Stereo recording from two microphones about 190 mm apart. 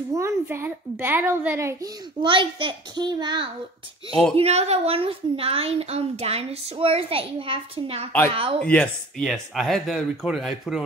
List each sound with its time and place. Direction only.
0.1 s a child's voice: 15° right (ahead or behind)
2.2 s a child's voice: 25° right (ahead or behind)
4.1 s speech: centre (ahead or behind)
4.4 s a woman's voice: 35° right (ahead or behind)
8.5 s speech: 5° left (ahead or behind)